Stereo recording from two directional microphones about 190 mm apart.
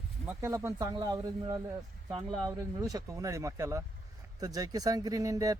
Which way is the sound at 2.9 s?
15° right (ahead or behind).